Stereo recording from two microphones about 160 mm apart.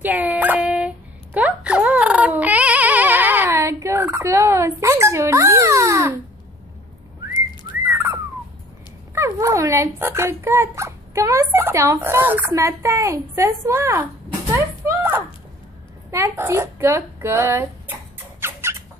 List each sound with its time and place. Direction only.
0.0 s dog: 10° right (ahead or behind)
7.8 s whistling: 15° right (ahead or behind)
9.1 s speech: 20° right (ahead or behind)
14.5 s a sound: 15° right (ahead or behind)
16.1 s speech: 15° right (ahead or behind)
18.4 s rodents: 15° right (ahead or behind)